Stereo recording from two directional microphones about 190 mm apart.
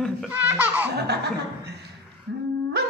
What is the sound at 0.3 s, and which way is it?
Laughter, 10° right (ahead or behind).